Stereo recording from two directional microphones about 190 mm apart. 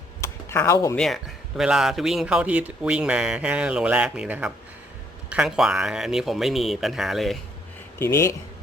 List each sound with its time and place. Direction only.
0.2 s a sound: 15° left (ahead or behind)
0.9 s a man's voice: centre (ahead or behind)
7.9 s speech: 15° left (ahead or behind)